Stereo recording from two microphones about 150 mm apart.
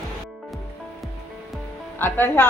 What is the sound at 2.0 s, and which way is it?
Speech, 15° left (ahead or behind).